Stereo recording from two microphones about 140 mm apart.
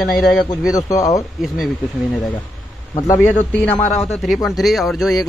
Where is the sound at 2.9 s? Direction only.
25° left (ahead or behind).